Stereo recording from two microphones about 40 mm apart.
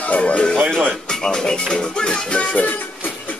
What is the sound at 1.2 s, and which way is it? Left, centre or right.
Music, centre.